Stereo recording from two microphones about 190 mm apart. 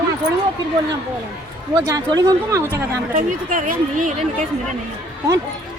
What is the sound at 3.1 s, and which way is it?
A woman's voice, 45° right (ahead or behind).